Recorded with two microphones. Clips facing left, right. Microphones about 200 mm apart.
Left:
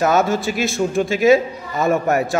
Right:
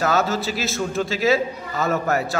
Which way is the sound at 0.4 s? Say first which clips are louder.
Left 4 dB; 35° right (ahead or behind).